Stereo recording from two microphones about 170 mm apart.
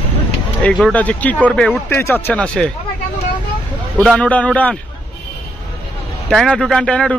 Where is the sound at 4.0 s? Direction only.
5° left (ahead or behind).